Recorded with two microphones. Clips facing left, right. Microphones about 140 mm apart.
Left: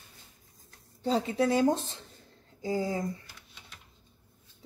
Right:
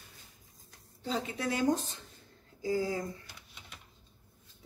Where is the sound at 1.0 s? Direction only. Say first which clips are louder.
Left 7 dB; 35° left (ahead or behind).